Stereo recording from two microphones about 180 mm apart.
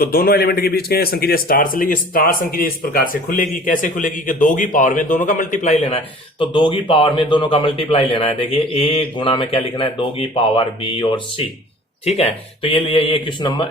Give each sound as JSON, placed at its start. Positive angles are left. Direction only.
{"t": 0.0, "sound": "a man's voice", "side_deg": 55}